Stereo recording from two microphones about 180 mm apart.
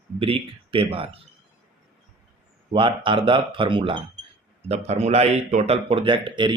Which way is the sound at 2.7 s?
30° right (ahead or behind).